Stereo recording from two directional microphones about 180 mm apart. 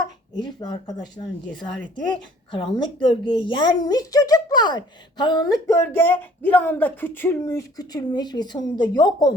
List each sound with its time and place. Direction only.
0.3 s a woman's voice: 25° left (ahead or behind)